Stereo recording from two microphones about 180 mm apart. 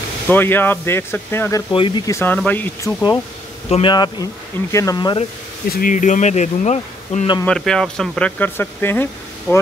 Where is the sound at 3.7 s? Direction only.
25° left (ahead or behind).